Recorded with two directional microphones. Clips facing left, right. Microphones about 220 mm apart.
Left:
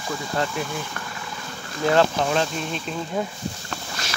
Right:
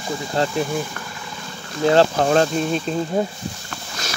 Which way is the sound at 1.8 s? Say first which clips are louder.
Right 4 dB; 30° right (ahead or behind).